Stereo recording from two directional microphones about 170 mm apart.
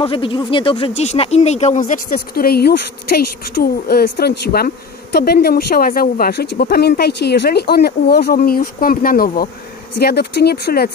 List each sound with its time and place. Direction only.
0.0 s speech: 30° left (ahead or behind); by 9.5 s 55° left (ahead or behind)
9.9 s speech: 70° left (ahead or behind)